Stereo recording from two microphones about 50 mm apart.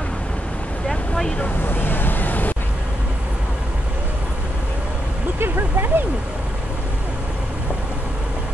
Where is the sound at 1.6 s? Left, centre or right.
Left.